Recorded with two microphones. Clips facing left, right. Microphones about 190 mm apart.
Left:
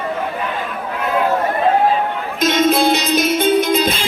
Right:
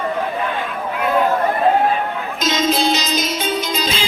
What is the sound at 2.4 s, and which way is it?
Music, 60° left (ahead or behind).